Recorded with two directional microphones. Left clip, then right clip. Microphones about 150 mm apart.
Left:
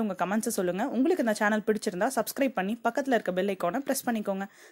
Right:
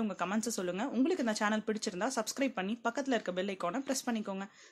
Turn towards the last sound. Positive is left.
turn(degrees=35)  # may be behind; listen again after turning